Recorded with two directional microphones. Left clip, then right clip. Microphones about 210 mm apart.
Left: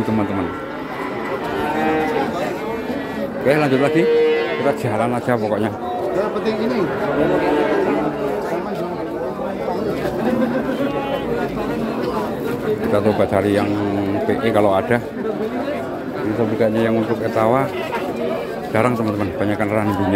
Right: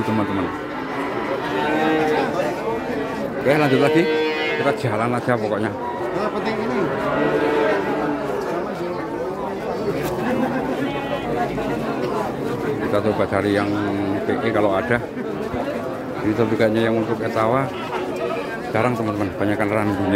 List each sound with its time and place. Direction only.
3.4 s speech: centre (ahead or behind)
12.9 s speech: 5° left (ahead or behind)
16.5 s a man's voice: 10° right (ahead or behind)
17.4 s speech: centre (ahead or behind)
19.4 s speech: centre (ahead or behind)